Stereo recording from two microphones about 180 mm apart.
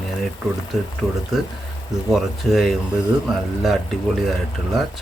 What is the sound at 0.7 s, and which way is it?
Speech, centre (ahead or behind).